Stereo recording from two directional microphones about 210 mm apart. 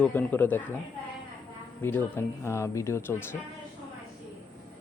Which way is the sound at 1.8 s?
10° left (ahead or behind).